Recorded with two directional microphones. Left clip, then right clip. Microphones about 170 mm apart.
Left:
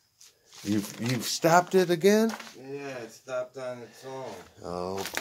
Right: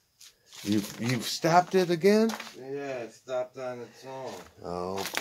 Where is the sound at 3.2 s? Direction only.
65° left (ahead or behind).